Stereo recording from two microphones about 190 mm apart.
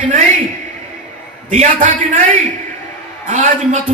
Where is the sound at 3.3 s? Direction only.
45° right (ahead or behind).